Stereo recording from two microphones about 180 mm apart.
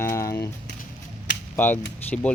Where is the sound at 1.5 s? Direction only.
10° left (ahead or behind).